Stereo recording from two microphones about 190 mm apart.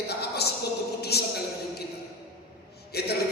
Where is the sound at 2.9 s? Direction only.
55° left (ahead or behind).